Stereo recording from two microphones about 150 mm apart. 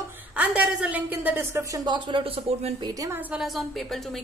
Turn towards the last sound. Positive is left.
turn(degrees=0)  # may be behind; listen again after turning